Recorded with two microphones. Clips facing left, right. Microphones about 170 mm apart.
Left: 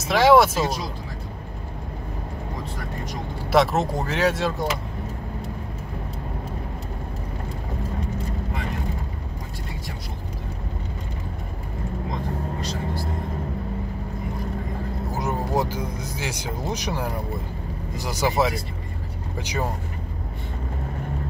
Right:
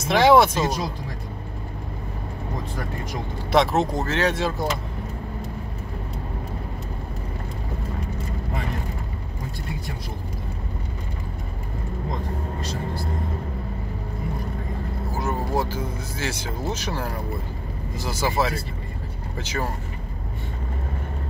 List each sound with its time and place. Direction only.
0.0 s speech: centre (ahead or behind)
3.5 s speech: centre (ahead or behind)
15.0 s speech: 15° left (ahead or behind)